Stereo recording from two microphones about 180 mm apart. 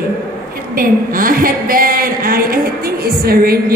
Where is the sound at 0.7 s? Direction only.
50° right (ahead or behind).